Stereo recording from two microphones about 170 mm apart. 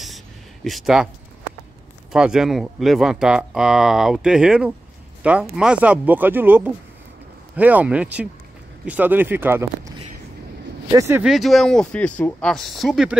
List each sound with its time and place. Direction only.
0.7 s speech: centre (ahead or behind)
2.1 s speech: 5° right (ahead or behind)
11.2 s speech: centre (ahead or behind)